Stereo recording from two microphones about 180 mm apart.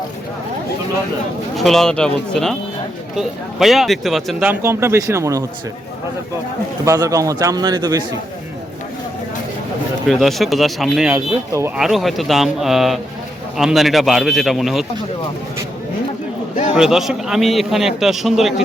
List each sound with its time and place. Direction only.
1.5 s a man's voice: centre (ahead or behind)
4.4 s speech: 15° right (ahead or behind)
6.8 s a man's voice: 15° right (ahead or behind)
10.1 s a man's voice: centre (ahead or behind)
11.1 s speech: 15° right (ahead or behind)
11.8 s a man's voice: centre (ahead or behind)
16.7 s a man's voice: 5° right (ahead or behind)